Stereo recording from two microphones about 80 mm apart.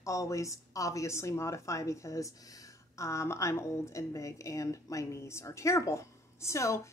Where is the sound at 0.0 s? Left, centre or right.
Left.